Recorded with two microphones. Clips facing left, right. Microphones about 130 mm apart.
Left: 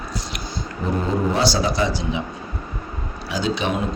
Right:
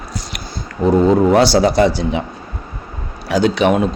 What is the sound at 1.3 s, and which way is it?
Speech, 65° right (ahead or behind).